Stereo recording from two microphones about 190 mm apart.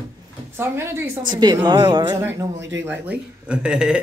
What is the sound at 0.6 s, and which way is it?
A woman's voice, 10° right (ahead or behind).